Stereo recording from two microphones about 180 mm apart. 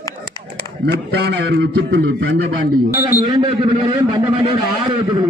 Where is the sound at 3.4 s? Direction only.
30° right (ahead or behind).